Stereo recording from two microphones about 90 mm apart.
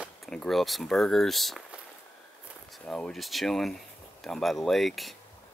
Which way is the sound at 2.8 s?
10° left (ahead or behind).